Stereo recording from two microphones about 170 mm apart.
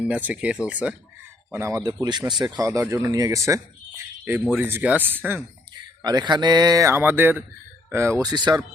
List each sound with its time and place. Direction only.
0.0 s speech: 10° right (ahead or behind)
1.5 s speech: 15° right (ahead or behind)
6.0 s speech: 25° right (ahead or behind)